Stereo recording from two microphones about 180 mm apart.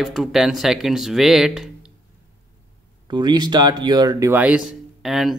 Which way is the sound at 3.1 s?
25° right (ahead or behind).